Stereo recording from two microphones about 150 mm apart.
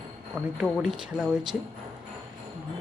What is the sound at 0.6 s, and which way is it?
Speech, 5° right (ahead or behind).